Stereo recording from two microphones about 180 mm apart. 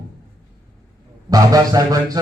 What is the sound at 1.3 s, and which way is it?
Speech, 20° right (ahead or behind).